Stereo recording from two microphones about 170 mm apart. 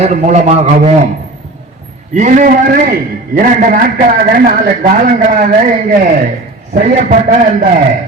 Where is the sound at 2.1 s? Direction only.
45° right (ahead or behind).